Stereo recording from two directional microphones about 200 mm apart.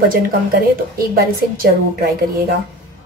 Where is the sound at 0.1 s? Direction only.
45° right (ahead or behind).